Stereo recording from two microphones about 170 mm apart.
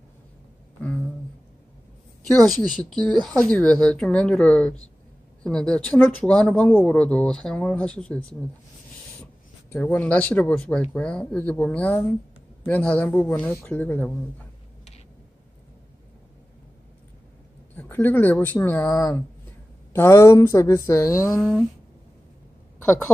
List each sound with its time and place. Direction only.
2.4 s speech: centre (ahead or behind)
17.7 s speech: 10° left (ahead or behind)
21.4 s speech: centre (ahead or behind)